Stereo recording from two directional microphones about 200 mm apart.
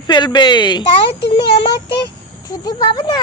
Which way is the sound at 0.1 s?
20° left (ahead or behind).